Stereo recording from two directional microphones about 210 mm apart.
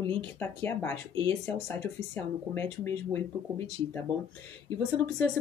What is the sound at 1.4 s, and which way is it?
Speech, 5° left (ahead or behind).